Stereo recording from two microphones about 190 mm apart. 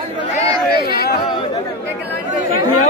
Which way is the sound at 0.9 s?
55° left (ahead or behind).